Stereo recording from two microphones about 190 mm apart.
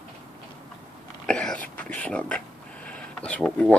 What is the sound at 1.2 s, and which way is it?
Speech, 5° left (ahead or behind).